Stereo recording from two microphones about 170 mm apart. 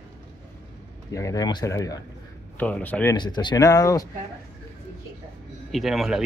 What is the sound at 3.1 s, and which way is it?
Speech, 25° left (ahead or behind).